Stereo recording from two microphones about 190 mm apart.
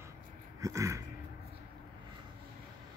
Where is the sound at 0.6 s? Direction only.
15° right (ahead or behind).